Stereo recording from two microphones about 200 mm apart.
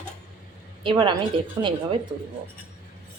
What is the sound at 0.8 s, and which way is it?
Speech, 25° right (ahead or behind).